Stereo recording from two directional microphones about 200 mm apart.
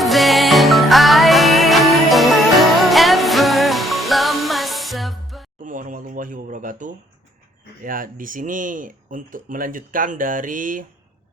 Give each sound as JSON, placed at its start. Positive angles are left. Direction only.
{"t": 0.0, "sound": "music", "side_deg": 0}
{"t": 5.6, "sound": "a sound", "side_deg": -40}
{"t": 7.9, "sound": "speech", "side_deg": -45}